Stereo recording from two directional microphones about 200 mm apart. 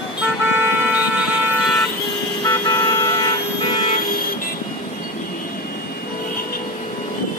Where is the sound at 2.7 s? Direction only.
15° left (ahead or behind).